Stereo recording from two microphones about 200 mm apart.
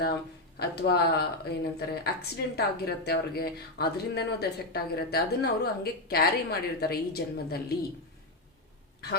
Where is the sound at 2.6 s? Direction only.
55° left (ahead or behind).